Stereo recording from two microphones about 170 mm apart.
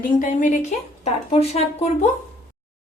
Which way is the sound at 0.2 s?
50° left (ahead or behind).